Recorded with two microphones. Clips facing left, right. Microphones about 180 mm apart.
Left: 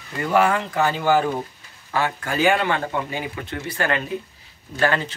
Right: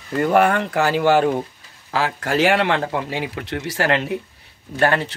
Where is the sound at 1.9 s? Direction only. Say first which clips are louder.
Right 3 dB; 90° right.